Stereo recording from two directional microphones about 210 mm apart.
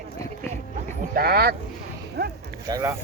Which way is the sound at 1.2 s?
45° right (ahead or behind).